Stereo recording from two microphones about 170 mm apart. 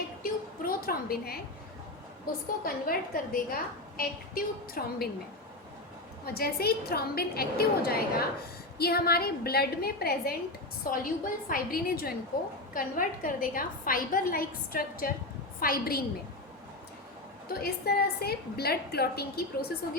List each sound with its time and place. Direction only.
0.2 s a sound: 60° left (ahead or behind)
2.3 s a woman's voice: 60° left (ahead or behind)
6.2 s a woman's voice: 65° left (ahead or behind)
17.5 s a woman's voice: 65° left (ahead or behind)